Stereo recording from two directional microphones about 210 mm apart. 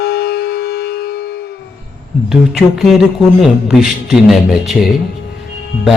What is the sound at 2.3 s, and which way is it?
Speech, centre (ahead or behind).